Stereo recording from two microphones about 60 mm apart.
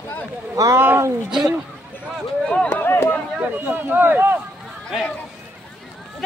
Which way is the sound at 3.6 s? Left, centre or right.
Right.